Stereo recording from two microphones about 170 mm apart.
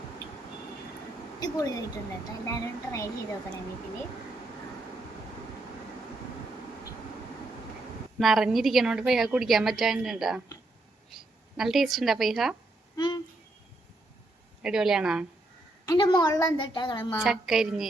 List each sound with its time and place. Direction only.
1.4 s a woman's voice: 20° left (ahead or behind)
8.2 s a woman's voice: centre (ahead or behind)
13.0 s a sound: 25° left (ahead or behind)
14.6 s a woman's voice: 5° right (ahead or behind)
15.9 s a woman's voice: 25° left (ahead or behind)
17.2 s a woman's voice: 5° right (ahead or behind)